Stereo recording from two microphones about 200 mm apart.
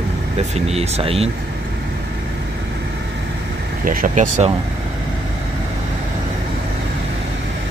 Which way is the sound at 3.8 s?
45° right (ahead or behind).